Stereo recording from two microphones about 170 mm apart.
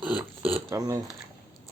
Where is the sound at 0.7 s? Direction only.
20° right (ahead or behind).